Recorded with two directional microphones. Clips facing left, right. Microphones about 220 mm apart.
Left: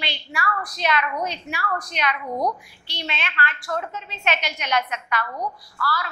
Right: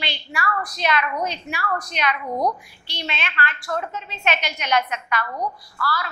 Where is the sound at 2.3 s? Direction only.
30° right (ahead or behind).